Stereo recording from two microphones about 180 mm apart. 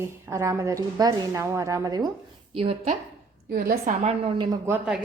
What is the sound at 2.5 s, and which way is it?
Speech, 30° right (ahead or behind).